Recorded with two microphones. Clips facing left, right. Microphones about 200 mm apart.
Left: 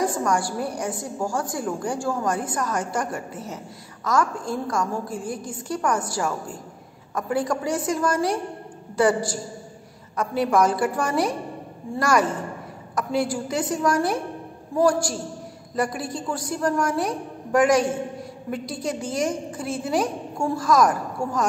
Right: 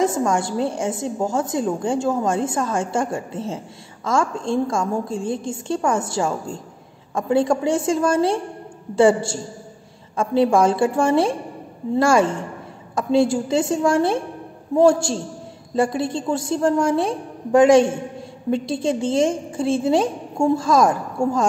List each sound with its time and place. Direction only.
0.0 s a woman's voice: 25° right (ahead or behind)